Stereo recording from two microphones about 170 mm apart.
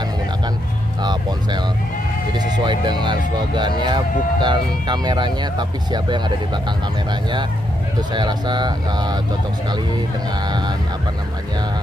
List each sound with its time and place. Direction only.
2.3 s music: 25° right (ahead or behind)
3.5 s speech: 25° right (ahead or behind)
8.1 s speech: 25° right (ahead or behind)